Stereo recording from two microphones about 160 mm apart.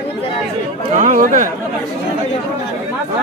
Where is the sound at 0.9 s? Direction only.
50° right (ahead or behind).